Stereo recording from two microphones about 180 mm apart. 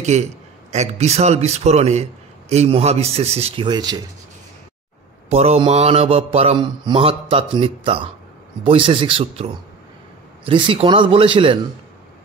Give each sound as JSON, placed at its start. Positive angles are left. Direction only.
{"t": 0.0, "sound": "mantra", "side_deg": -40}
{"t": 5.3, "sound": "mantra", "side_deg": -35}
{"t": 8.6, "sound": "a man's voice", "side_deg": -30}